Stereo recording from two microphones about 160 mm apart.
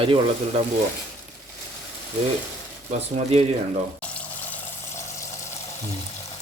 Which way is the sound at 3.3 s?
45° right (ahead or behind).